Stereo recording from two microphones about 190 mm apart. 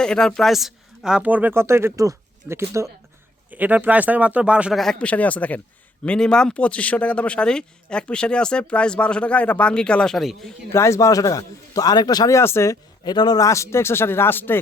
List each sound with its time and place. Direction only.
0.0 s speech: 5° left (ahead or behind)
10.7 s a man's voice: 15° left (ahead or behind)